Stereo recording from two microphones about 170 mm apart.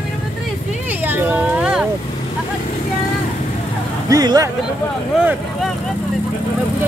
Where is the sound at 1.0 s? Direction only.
10° right (ahead or behind).